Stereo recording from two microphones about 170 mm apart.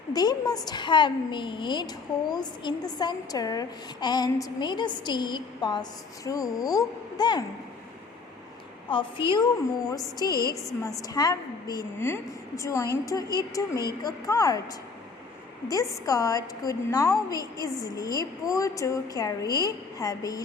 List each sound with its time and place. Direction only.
0.1 s a woman's voice: 20° left (ahead or behind)
8.9 s a woman's voice: 30° left (ahead or behind)